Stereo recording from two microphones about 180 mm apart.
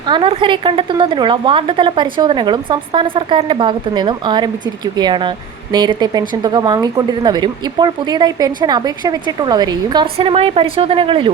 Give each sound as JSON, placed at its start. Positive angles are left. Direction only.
{"t": 0.1, "sound": "speech", "side_deg": -30}